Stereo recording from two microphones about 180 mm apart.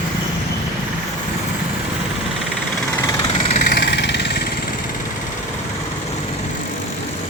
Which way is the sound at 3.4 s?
45° left (ahead or behind).